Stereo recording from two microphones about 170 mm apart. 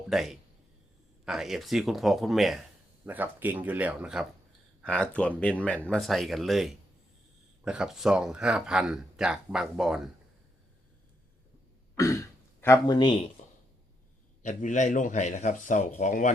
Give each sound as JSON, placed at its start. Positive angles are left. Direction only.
{"t": 0.1, "sound": "speech", "side_deg": 0}
{"t": 4.8, "sound": "speech", "side_deg": 5}
{"t": 11.9, "sound": "speech", "side_deg": 20}
{"t": 14.4, "sound": "speech", "side_deg": 45}